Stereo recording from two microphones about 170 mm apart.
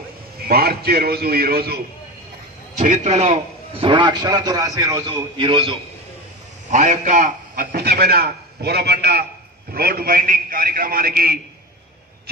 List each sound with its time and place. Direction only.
0.5 s a man's voice: 65° right (ahead or behind)
2.8 s a man's voice: 50° right (ahead or behind); by 5.8 s 30° right (ahead or behind)
6.7 s a man's voice: 50° right (ahead or behind)